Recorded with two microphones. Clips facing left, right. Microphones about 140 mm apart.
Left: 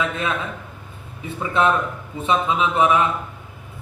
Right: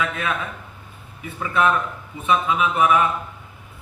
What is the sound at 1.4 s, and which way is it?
A man's voice, 25° left (ahead or behind).